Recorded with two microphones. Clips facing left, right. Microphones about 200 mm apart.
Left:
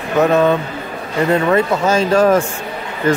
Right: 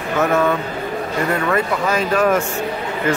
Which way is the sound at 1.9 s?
30° left (ahead or behind).